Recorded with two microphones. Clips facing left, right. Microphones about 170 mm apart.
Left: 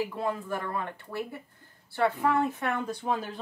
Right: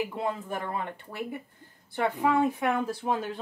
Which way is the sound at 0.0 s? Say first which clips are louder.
Even; 20° right (ahead or behind).